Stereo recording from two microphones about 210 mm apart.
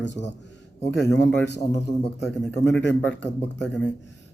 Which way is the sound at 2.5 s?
55° left (ahead or behind).